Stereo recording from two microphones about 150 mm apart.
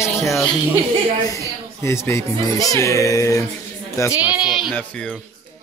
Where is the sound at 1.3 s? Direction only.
20° left (ahead or behind).